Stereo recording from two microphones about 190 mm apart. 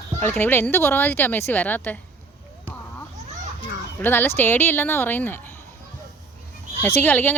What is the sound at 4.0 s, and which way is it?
Speech, 10° left (ahead or behind).